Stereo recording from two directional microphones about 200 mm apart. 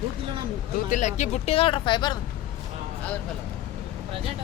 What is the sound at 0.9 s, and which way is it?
Speech, 35° left (ahead or behind).